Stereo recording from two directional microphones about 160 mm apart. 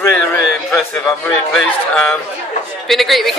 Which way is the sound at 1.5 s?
Centre (ahead or behind).